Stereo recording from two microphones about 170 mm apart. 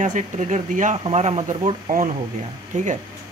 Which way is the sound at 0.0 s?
45° right (ahead or behind).